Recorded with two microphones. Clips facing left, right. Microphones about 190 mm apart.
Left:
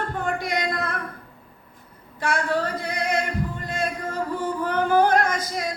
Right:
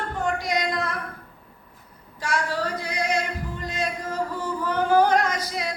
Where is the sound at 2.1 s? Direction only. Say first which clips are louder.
Left 3 dB; 55° left (ahead or behind).